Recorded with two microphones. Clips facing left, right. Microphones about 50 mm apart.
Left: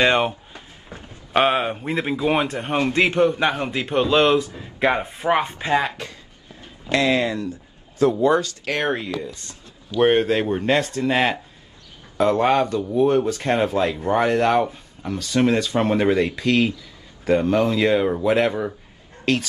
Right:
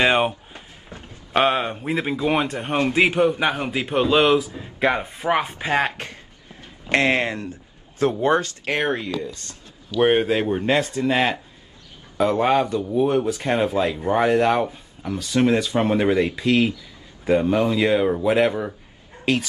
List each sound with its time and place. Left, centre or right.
0.0 s a man's voice: centre
1.3 s a man's voice: centre
5.7 s speech: right
8.8 s speech: centre
9.9 s speech: centre
11.1 s speech: centre
19.3 s a man's voice: centre